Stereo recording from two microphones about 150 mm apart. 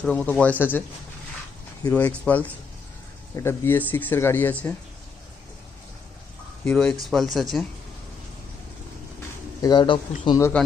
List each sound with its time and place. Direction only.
0.0 s speech: 10° left (ahead or behind)
1.9 s speech: 10° left (ahead or behind)
6.7 s speech: 5° left (ahead or behind)
9.6 s a man's voice: 25° left (ahead or behind)